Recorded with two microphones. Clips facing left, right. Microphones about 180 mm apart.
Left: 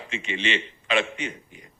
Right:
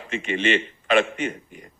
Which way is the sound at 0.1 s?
50° right (ahead or behind).